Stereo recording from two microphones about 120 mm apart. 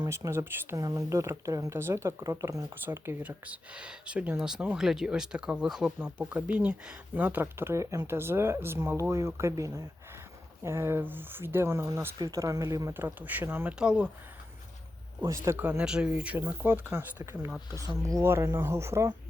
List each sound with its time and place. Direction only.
0.1 s speech: 25° right (ahead or behind)
12.9 s speech: 15° right (ahead or behind)
15.2 s speech: 25° right (ahead or behind)